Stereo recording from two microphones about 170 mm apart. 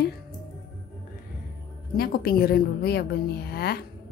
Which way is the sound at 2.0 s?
60° left (ahead or behind).